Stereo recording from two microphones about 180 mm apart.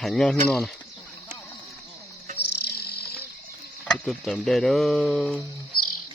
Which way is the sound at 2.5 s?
60° left (ahead or behind).